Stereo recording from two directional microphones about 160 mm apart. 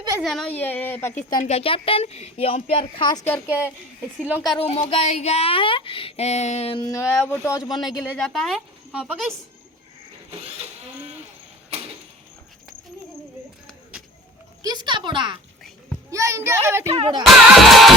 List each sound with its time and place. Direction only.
0.2 s a child's voice: centre (ahead or behind)
1.1 s speech: 45° left (ahead or behind); by 3.2 s 30° left (ahead or behind)
3.2 s a child's voice: 15° left (ahead or behind)
4.4 s speech: 35° left (ahead or behind)
6.8 s speech: 20° left (ahead or behind)
8.1 s speech: centre (ahead or behind)
11.7 s a sound: 40° right (ahead or behind)
14.6 s speech: 25° right (ahead or behind)
16.0 s speech: 20° right (ahead or behind)
16.9 s music: 35° right (ahead or behind)
17.2 s speech: centre (ahead or behind)